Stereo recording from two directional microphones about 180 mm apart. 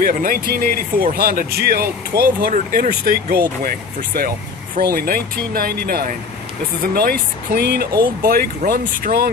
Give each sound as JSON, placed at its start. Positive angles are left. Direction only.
{"t": 0.0, "sound": "speech", "side_deg": -50}